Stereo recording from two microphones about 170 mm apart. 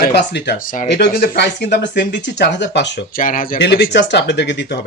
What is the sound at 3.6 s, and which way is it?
Speech, 90° left.